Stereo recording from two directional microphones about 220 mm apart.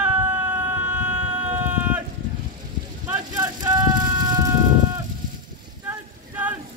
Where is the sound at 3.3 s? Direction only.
15° right (ahead or behind).